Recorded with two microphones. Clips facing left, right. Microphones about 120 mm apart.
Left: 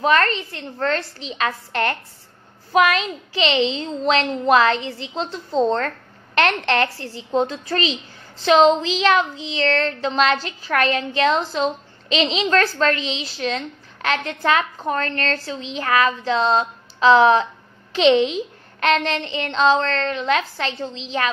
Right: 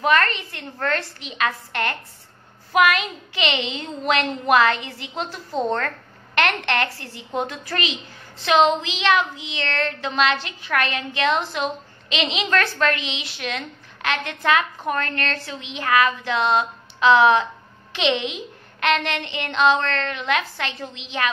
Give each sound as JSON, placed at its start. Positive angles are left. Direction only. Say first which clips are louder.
{"t": 0.0, "sound": "a woman's voice", "louder": "left 2 dB", "side_deg": 30}